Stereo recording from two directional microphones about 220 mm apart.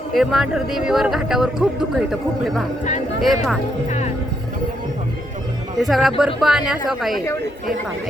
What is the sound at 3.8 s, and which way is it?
Speech, 30° left (ahead or behind).